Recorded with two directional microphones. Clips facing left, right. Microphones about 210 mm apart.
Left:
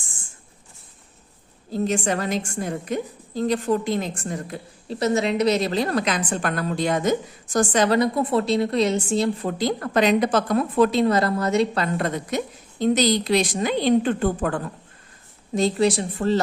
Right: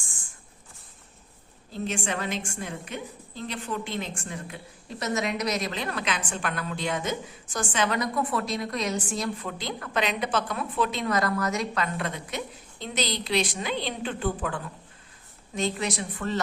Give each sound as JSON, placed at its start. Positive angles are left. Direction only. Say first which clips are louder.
{"t": 1.7, "sound": "a woman's voice", "louder": "left 8 dB", "side_deg": 40}
{"t": 15.5, "sound": "a woman's voice", "louder": "left 9 dB", "side_deg": 35}